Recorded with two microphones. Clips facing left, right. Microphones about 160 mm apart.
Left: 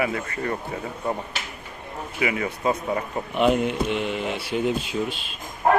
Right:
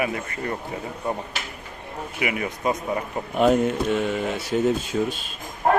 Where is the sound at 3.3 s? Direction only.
45° right (ahead or behind).